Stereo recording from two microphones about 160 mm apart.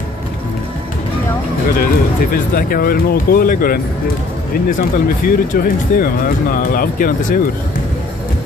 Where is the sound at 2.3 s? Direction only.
65° left (ahead or behind).